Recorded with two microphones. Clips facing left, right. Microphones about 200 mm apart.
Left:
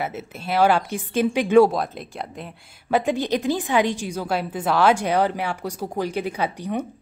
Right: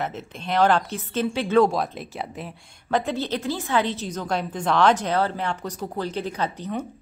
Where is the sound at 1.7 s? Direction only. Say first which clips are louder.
Even; centre (ahead or behind).